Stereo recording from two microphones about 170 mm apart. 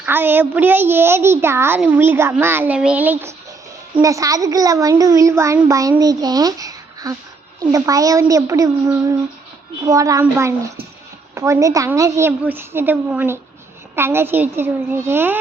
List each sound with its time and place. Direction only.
0.0 s a child's voice: 10° right (ahead or behind)